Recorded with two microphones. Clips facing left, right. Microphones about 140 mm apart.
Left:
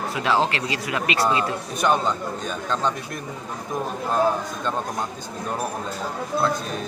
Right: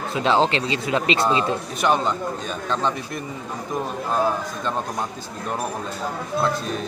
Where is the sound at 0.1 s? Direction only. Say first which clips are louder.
Right 4 dB; 25° right (ahead or behind).